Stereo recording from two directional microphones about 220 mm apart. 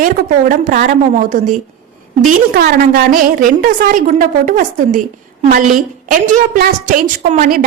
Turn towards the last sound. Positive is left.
turn(degrees=-40)  # may be behind; listen again after turning